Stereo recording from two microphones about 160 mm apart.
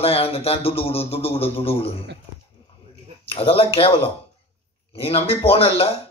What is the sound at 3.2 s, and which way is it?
A man's voice, 35° left (ahead or behind).